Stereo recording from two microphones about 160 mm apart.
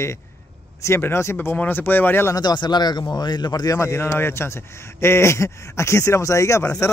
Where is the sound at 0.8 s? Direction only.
15° left (ahead or behind).